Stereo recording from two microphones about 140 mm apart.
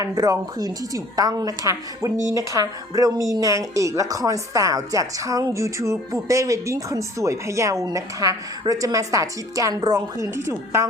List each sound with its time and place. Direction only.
0.0 s a woman's voice: 25° right (ahead or behind)